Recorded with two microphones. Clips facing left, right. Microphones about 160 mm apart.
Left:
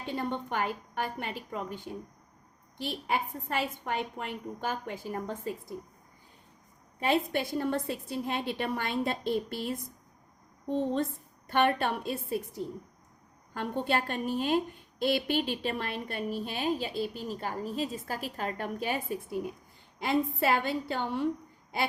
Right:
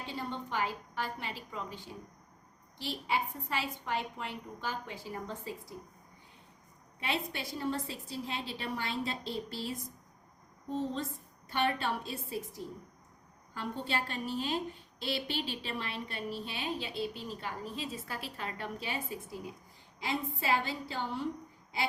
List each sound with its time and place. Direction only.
0.1 s a woman's voice: 55° left (ahead or behind)
7.0 s a woman's voice: 50° left (ahead or behind)